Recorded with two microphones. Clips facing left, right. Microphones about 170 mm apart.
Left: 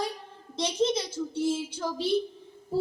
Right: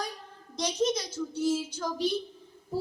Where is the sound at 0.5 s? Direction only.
25° left (ahead or behind).